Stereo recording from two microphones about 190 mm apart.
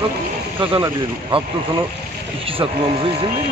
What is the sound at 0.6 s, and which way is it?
Speech, 25° right (ahead or behind).